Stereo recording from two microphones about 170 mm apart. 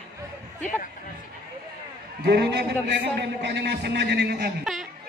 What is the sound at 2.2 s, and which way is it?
Speech, 70° right (ahead or behind).